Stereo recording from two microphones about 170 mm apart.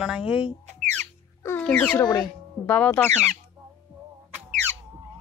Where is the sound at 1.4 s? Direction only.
10° left (ahead or behind).